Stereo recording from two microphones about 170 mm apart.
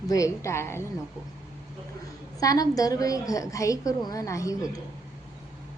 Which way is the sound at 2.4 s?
20° left (ahead or behind).